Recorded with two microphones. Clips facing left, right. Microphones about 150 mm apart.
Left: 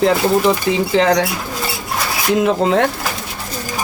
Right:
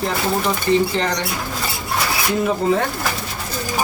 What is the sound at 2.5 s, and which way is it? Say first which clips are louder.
Speech: left 3 dB; 80° left.